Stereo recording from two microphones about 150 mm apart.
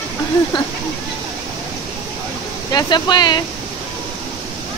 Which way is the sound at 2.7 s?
30° left (ahead or behind).